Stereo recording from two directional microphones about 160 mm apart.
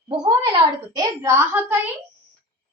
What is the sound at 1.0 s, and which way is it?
Speech, 15° right (ahead or behind).